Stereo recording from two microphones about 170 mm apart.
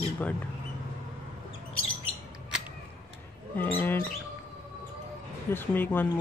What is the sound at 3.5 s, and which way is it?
Speech, 10° left (ahead or behind).